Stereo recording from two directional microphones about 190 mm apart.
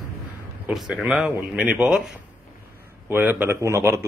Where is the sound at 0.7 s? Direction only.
Centre (ahead or behind).